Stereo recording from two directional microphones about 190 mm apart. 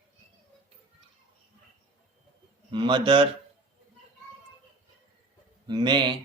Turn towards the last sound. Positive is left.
turn(degrees=-25)  # may be behind; listen again after turning